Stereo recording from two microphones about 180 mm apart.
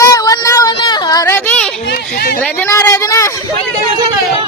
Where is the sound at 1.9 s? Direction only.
60° left (ahead or behind).